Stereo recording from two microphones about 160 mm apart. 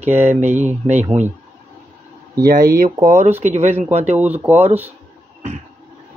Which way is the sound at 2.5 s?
60° right (ahead or behind).